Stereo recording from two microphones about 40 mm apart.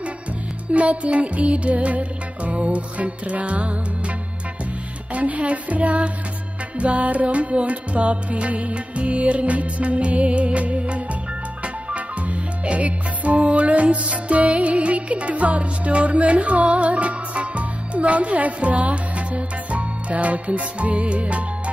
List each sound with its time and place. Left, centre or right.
0.7 s music: right
5.1 s music: right